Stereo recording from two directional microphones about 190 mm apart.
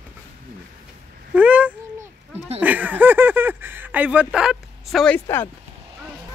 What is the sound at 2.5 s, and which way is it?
Speech, 10° right (ahead or behind).